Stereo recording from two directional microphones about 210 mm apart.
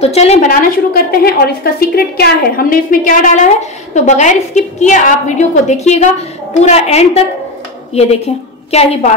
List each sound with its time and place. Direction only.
0.0 s a woman's voice: 30° left (ahead or behind)